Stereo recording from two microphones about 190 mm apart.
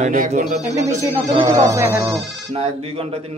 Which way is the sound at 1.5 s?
15° right (ahead or behind).